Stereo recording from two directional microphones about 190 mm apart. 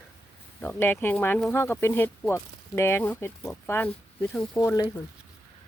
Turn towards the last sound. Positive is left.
turn(degrees=20)  # may be behind; listen again after turning